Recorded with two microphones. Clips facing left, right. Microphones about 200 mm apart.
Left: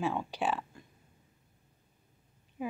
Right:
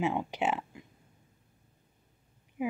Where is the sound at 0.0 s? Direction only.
20° right (ahead or behind).